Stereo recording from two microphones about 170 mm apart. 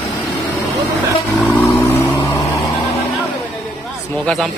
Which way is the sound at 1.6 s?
15° left (ahead or behind).